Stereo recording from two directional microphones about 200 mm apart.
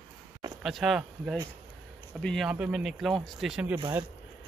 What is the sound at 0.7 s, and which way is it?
A man's voice, centre (ahead or behind).